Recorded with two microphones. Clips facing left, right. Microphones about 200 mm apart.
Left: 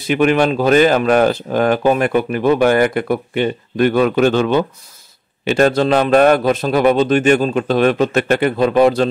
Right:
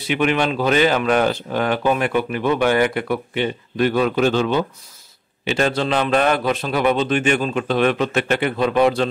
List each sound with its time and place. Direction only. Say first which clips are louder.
0.1 s speech: left 5 dB; 45° left (ahead or behind)